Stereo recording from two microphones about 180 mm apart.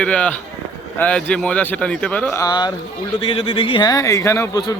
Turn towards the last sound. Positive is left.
turn(degrees=15)  # may be behind; listen again after turning